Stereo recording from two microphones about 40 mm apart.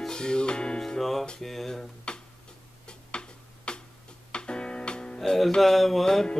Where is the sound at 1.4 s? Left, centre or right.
Centre.